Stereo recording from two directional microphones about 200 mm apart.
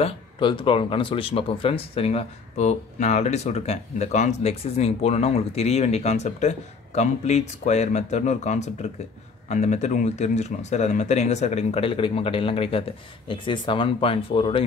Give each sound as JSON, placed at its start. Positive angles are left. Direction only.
{"t": 0.0, "sound": "speech", "side_deg": 25}